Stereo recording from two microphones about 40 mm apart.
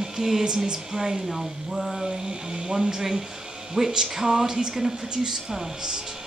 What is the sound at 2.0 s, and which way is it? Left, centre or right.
Speech, centre.